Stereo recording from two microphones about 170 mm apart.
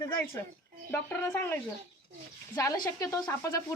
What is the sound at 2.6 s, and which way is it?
A woman's voice, 20° left (ahead or behind).